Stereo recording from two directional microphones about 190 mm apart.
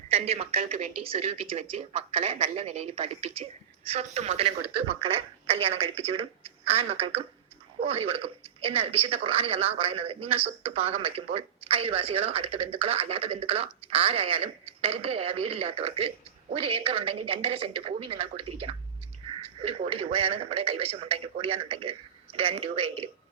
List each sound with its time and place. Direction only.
0.1 s a woman's voice: 35° right (ahead or behind)